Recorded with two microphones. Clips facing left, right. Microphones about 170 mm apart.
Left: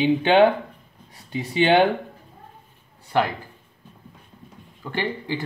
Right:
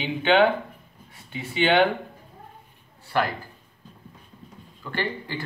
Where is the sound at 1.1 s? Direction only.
40° left (ahead or behind).